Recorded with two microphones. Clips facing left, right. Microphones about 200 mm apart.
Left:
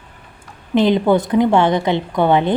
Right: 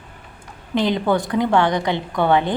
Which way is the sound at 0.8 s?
20° left (ahead or behind).